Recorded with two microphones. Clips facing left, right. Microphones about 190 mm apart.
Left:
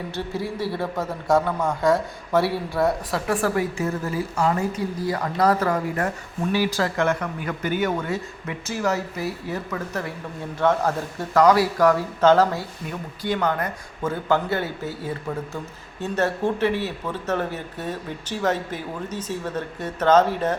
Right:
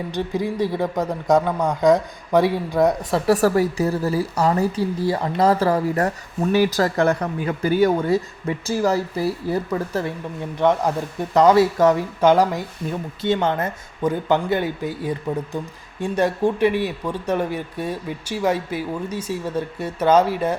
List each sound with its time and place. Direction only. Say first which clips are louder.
0.1 s speech: right 7 dB; 15° right (ahead or behind)
3.2 s a woman's voice: right 6 dB; 40° right (ahead or behind)
10.6 s speech: right 2 dB; 15° right (ahead or behind)
13.2 s speech: right 3 dB; 25° right (ahead or behind); by 20.6 s 10° right (ahead or behind)